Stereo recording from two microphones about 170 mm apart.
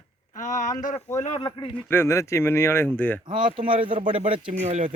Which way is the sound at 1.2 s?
35° left (ahead or behind).